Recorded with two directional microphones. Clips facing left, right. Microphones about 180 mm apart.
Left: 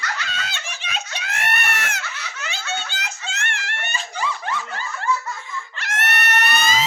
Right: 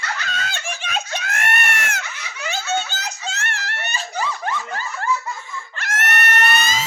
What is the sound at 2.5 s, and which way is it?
Snicker, 45° right (ahead or behind).